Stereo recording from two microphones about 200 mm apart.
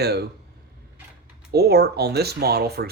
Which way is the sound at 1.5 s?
55° right (ahead or behind).